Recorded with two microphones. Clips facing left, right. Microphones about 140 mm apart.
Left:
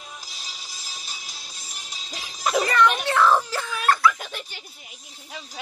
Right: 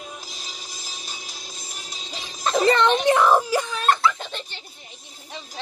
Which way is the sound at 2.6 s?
25° right (ahead or behind).